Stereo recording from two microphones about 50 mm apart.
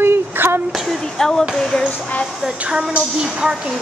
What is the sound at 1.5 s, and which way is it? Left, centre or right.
Music, centre.